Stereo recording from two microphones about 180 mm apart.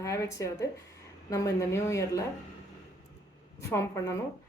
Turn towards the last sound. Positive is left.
turn(degrees=15)  # may be behind; listen again after turning